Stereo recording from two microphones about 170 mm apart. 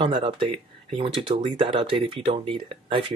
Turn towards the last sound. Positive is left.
turn(degrees=-30)  # may be behind; listen again after turning